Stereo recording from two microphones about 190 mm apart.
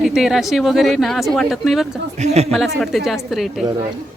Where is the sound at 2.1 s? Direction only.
35° right (ahead or behind).